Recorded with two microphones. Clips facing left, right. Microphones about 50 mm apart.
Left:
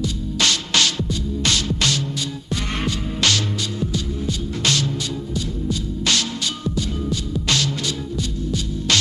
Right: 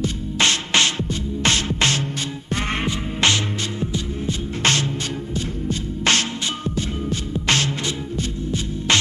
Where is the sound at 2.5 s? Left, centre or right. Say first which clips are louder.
Right 4 dB; right.